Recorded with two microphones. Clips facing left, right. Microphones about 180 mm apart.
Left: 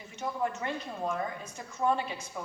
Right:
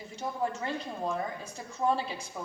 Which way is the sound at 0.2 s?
30° right (ahead or behind).